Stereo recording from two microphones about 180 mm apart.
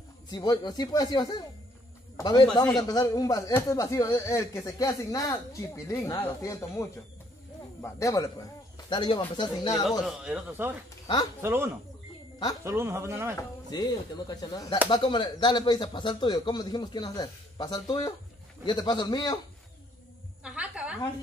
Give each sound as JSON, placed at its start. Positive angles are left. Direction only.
{"t": 0.3, "sound": "a man's voice", "side_deg": 25}
{"t": 9.8, "sound": "a man's voice", "side_deg": -5}
{"t": 13.4, "sound": "speech", "side_deg": 20}
{"t": 20.4, "sound": "a woman's voice", "side_deg": -5}